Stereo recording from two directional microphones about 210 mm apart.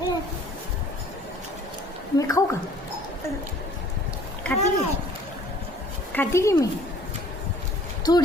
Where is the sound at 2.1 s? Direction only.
15° left (ahead or behind).